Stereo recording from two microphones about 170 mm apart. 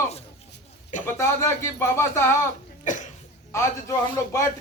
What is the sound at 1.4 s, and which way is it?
Speech, 15° left (ahead or behind).